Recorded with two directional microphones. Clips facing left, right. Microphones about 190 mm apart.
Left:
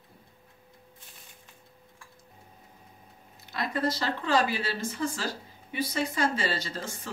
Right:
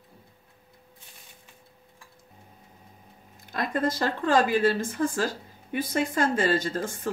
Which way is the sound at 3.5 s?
50° right (ahead or behind).